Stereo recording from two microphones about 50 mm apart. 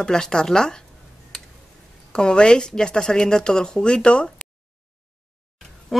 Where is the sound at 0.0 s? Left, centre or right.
Centre.